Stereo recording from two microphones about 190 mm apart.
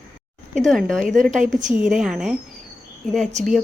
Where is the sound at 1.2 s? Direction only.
40° right (ahead or behind).